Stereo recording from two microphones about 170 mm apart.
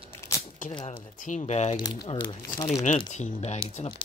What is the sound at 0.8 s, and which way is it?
Speech, 45° left (ahead or behind).